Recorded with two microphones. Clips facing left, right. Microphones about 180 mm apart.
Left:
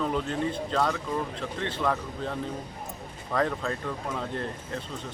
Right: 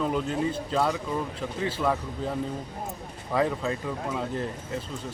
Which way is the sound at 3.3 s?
5° right (ahead or behind).